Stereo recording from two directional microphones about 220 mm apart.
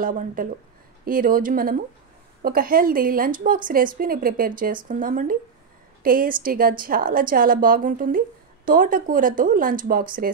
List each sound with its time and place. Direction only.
0.0 s a woman's voice: 40° right (ahead or behind)